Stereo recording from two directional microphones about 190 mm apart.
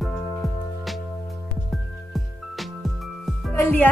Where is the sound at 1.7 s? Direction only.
Centre (ahead or behind).